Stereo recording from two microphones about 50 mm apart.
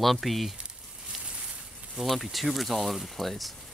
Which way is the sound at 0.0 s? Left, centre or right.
Centre.